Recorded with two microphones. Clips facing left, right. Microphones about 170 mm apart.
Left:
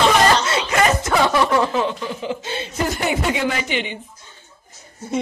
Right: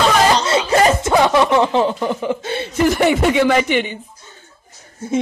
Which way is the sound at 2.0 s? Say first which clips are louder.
Right 6 dB; 55° right (ahead or behind).